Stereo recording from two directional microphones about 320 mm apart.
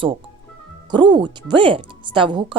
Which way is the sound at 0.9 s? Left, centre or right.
Centre.